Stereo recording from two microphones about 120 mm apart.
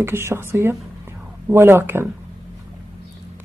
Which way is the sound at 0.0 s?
20° right (ahead or behind).